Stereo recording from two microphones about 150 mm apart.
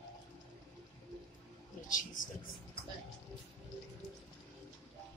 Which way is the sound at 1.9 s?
60° left (ahead or behind).